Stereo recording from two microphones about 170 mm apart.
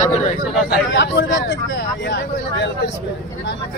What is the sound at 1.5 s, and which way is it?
Speech, 85° left.